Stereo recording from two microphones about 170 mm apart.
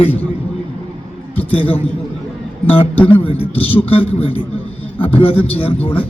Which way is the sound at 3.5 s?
35° left (ahead or behind).